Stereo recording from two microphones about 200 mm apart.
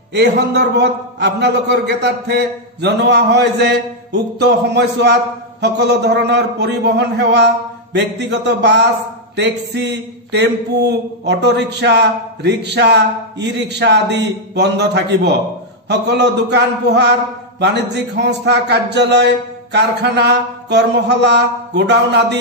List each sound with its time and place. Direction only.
0.1 s a man's voice: 55° right (ahead or behind)